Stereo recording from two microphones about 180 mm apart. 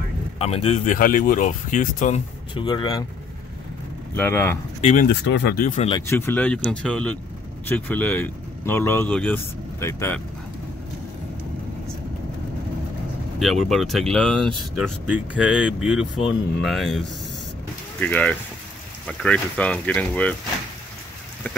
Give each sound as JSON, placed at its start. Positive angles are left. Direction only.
{"t": 0.4, "sound": "speech", "side_deg": 35}
{"t": 0.9, "sound": "speech", "side_deg": 50}
{"t": 2.5, "sound": "speech", "side_deg": 25}
{"t": 4.1, "sound": "speech", "side_deg": 15}
{"t": 5.0, "sound": "speech", "side_deg": 65}
{"t": 5.6, "sound": "speech", "side_deg": 45}
{"t": 6.0, "sound": "speech", "side_deg": 10}
{"t": 13.4, "sound": "speech", "side_deg": 0}
{"t": 18.0, "sound": "speech", "side_deg": 10}